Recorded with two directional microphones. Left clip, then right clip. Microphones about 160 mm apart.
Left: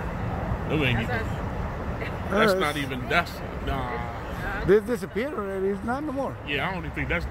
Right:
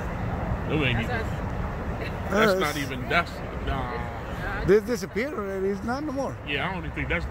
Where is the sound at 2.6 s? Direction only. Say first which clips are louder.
Left 1 dB; 75° left (ahead or behind).